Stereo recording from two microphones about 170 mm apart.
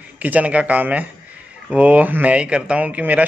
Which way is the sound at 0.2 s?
10° right (ahead or behind).